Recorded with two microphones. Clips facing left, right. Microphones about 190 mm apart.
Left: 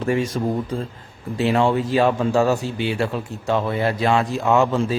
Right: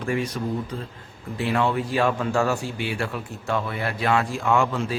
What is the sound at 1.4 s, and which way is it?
Speech, 25° left (ahead or behind).